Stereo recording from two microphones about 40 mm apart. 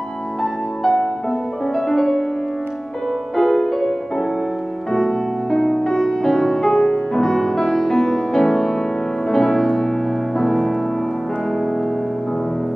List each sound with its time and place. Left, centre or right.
0.4 s music: centre
3.3 s music: centre
4.9 s music: centre